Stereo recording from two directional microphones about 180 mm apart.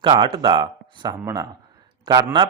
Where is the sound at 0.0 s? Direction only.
30° right (ahead or behind).